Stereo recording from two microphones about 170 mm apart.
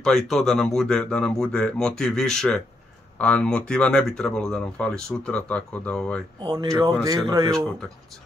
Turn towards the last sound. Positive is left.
turn(degrees=-20)  # may be behind; listen again after turning